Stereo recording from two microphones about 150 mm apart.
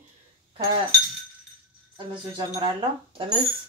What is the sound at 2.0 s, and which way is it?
Speech, 30° right (ahead or behind).